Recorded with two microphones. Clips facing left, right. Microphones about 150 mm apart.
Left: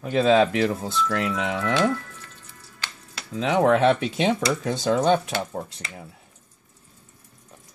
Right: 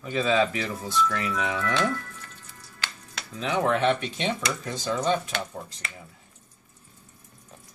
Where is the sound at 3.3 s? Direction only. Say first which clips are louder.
Left 6 dB; 80° left.